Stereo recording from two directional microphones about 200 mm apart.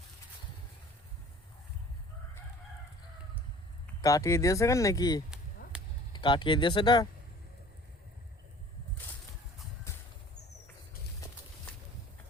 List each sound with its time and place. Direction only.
4.0 s speech: 15° left (ahead or behind)
5.6 s a sound: 45° left (ahead or behind)
6.1 s speech: 25° left (ahead or behind)